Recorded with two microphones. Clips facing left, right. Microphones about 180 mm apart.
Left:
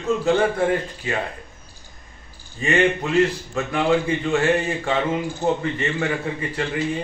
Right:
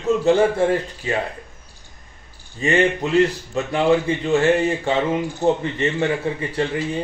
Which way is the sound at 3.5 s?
25° right (ahead or behind).